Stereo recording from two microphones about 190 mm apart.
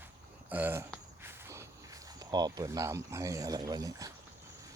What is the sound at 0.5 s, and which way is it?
Speech, 10° right (ahead or behind).